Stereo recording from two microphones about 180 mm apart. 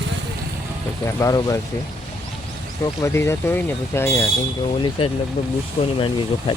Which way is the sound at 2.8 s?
15° left (ahead or behind).